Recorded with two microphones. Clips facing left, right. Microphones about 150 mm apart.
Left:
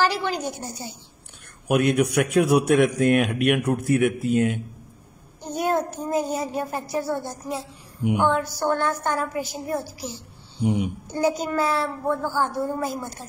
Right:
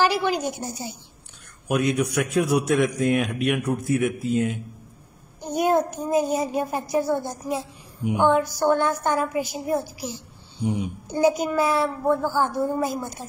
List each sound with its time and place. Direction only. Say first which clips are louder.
0.0 s speech: right 2 dB; 15° right (ahead or behind)
1.7 s a man's voice: left 3 dB; 60° left (ahead or behind)
5.4 s speech: right 3 dB; 15° right (ahead or behind)